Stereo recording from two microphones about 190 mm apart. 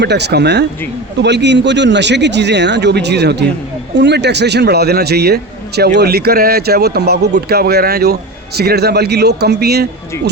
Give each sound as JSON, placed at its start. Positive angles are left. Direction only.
{"t": 0.0, "sound": "speech", "side_deg": -60}